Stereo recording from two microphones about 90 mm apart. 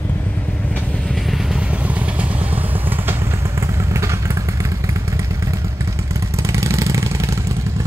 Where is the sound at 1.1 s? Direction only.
Centre (ahead or behind).